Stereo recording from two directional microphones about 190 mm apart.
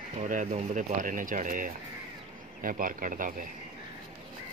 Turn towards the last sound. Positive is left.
turn(degrees=-45)  # may be behind; listen again after turning